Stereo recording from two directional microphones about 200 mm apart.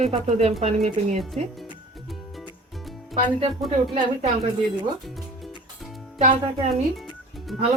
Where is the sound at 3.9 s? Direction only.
35° right (ahead or behind).